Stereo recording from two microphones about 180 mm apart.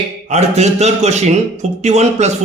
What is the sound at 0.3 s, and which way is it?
A man's voice, 40° right (ahead or behind).